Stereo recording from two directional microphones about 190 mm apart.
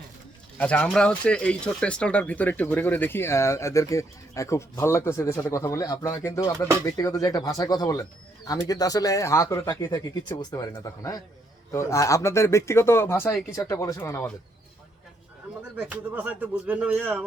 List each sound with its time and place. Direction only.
0.6 s speech: 5° left (ahead or behind)
15.9 s speech: 10° right (ahead or behind)